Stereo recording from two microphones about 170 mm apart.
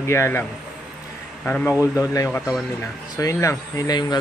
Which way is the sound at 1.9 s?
20° left (ahead or behind).